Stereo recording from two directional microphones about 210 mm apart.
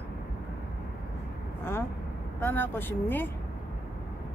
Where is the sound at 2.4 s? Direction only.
10° left (ahead or behind).